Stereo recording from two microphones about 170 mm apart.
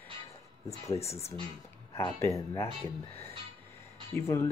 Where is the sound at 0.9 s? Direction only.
40° left (ahead or behind).